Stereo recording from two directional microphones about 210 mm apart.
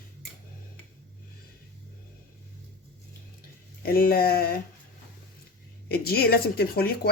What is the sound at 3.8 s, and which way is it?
Speech, 45° left (ahead or behind).